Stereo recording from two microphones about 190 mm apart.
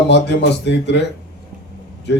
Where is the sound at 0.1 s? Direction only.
65° left (ahead or behind).